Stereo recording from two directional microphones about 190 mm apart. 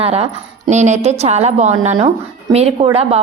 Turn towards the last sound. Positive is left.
turn(degrees=-30)  # may be behind; listen again after turning